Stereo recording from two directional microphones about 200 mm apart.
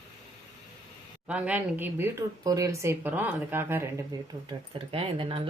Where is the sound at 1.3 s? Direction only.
5° right (ahead or behind).